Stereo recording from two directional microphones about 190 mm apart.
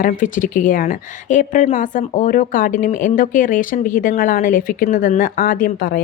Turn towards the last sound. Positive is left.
turn(degrees=50)  # may be behind; listen again after turning